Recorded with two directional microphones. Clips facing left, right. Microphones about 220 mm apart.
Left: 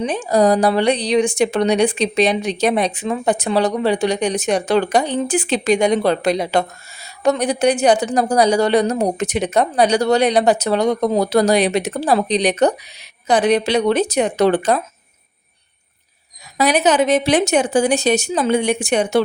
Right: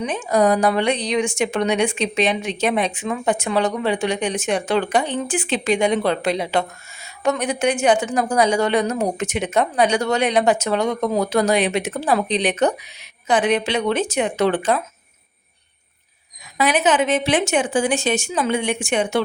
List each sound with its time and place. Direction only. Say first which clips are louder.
0.0 s a woman's voice: left 3 dB; 35° left (ahead or behind)
16.6 s a woman's voice: left 3 dB; 40° left (ahead or behind)